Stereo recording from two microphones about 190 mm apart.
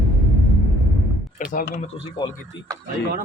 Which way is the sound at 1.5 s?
45° left (ahead or behind).